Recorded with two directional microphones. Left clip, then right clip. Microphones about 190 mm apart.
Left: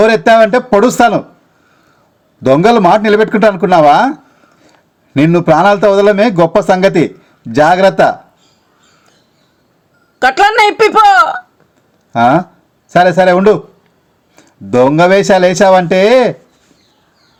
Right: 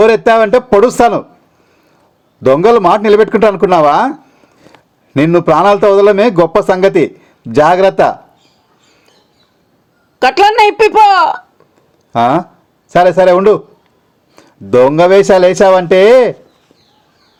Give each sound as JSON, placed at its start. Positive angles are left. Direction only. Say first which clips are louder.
{"t": 0.0, "sound": "speech", "louder": "left 1 dB", "side_deg": -25}
{"t": 2.4, "sound": "a man's voice", "louder": "even", "side_deg": -30}
{"t": 10.2, "sound": "speech", "louder": "right 1 dB", "side_deg": -20}